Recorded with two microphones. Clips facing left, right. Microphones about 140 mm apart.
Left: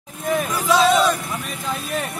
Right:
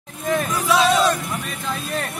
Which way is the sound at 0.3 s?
5° left (ahead or behind).